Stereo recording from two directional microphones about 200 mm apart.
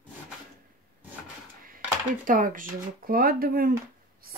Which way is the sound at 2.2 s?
40° right (ahead or behind).